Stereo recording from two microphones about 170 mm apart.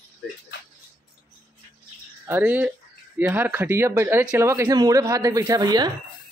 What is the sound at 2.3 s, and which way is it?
Speech, 10° right (ahead or behind).